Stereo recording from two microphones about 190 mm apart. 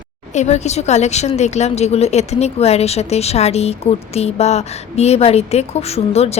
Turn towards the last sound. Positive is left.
turn(degrees=35)  # may be behind; listen again after turning